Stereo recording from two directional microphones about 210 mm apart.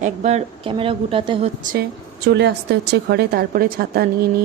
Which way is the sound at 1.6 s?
40° right (ahead or behind).